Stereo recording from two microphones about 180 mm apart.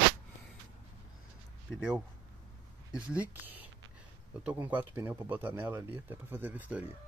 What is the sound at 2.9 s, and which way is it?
Speech, 10° right (ahead or behind).